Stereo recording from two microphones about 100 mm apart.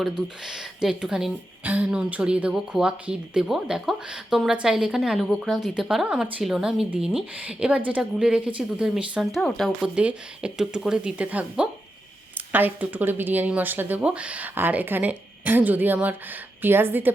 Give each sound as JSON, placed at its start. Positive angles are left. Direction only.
{"t": 0.0, "sound": "speech", "side_deg": -5}